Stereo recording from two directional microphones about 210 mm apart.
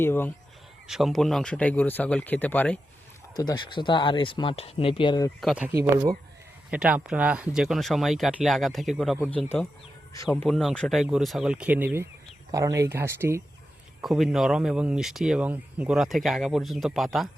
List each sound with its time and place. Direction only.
0.0 s speech: 10° left (ahead or behind)
0.9 s speech: centre (ahead or behind)
3.3 s speech: 20° left (ahead or behind)
5.4 s speech: centre (ahead or behind)
14.0 s speech: centre (ahead or behind)